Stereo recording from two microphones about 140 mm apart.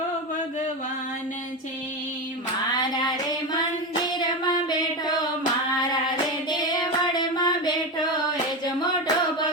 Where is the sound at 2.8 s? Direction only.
30° left (ahead or behind).